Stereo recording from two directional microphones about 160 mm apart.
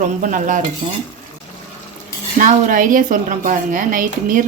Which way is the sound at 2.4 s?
55° right (ahead or behind).